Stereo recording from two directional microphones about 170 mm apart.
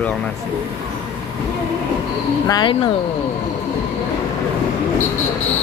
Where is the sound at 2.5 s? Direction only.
25° left (ahead or behind).